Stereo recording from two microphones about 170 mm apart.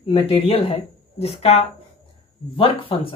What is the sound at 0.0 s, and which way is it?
Speech, 35° left (ahead or behind).